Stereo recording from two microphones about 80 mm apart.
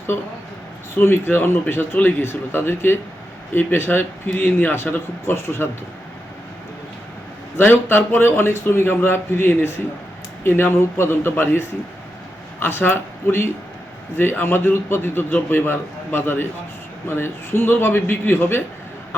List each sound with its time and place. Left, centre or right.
0.9 s a man's voice: left
7.5 s a man's voice: left